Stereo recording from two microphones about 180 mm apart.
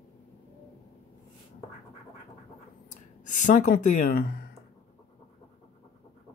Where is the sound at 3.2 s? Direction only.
45° left (ahead or behind).